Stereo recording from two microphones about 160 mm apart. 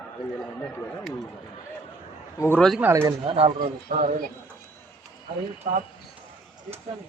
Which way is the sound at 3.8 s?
65° right (ahead or behind).